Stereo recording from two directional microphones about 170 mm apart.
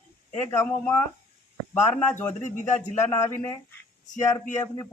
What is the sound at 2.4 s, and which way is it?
Speech, 45° left (ahead or behind).